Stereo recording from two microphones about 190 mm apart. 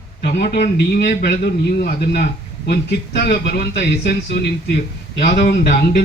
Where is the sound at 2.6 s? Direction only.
55° left (ahead or behind).